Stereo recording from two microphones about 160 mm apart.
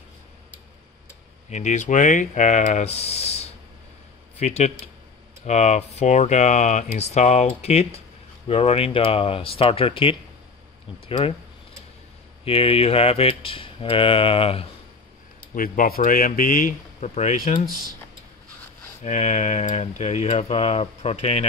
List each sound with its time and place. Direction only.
1.5 s speech: 45° left (ahead or behind)
12.4 s speech: 35° left (ahead or behind)
15.5 s speech: 60° left (ahead or behind)
19.0 s speech: 45° left (ahead or behind)